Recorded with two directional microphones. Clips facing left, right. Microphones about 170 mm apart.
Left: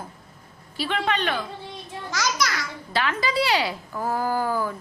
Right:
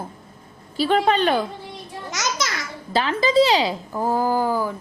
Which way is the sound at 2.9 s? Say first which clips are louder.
Right 6 dB; 30° right (ahead or behind).